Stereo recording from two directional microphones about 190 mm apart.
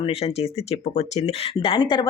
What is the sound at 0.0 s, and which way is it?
Speech, 30° left (ahead or behind).